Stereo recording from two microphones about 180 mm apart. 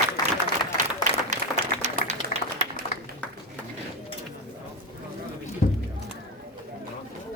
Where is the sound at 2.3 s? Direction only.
45° left (ahead or behind).